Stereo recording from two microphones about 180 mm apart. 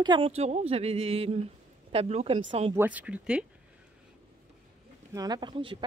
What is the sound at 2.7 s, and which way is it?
Speech, 10° right (ahead or behind).